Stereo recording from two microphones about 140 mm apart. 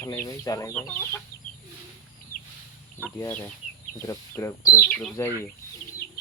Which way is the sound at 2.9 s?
15° left (ahead or behind).